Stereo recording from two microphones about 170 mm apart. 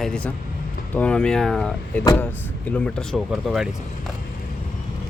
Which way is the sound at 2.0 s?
20° left (ahead or behind).